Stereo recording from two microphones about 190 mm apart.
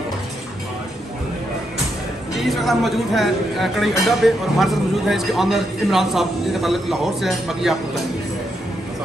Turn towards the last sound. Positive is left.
turn(degrees=0)  # may be behind; listen again after turning